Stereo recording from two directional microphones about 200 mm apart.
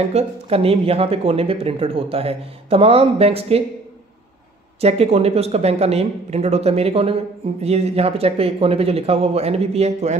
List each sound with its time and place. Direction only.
0.1 s speech: 30° right (ahead or behind)
4.7 s speech: 30° right (ahead or behind)